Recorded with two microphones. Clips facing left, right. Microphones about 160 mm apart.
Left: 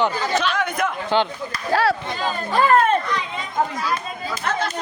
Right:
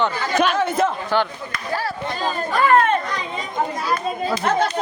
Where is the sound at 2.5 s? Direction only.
30° left (ahead or behind).